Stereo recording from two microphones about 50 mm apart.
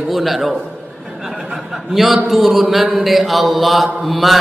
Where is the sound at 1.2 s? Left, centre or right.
Centre.